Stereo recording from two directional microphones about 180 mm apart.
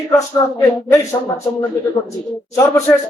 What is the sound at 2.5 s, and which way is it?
Speech, 15° left (ahead or behind).